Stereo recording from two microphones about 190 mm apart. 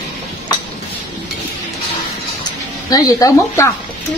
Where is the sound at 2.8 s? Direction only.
20° left (ahead or behind).